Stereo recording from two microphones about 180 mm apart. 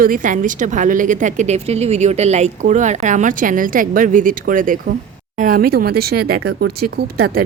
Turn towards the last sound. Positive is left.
turn(degrees=-60)  # may be behind; listen again after turning